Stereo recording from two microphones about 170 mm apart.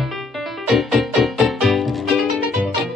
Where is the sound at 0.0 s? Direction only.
Centre (ahead or behind).